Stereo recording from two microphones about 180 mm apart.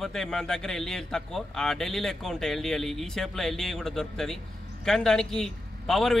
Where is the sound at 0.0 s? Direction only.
Centre (ahead or behind).